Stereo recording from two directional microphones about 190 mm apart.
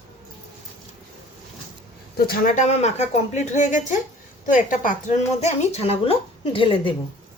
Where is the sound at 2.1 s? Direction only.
55° left (ahead or behind); by 6.9 s 30° left (ahead or behind).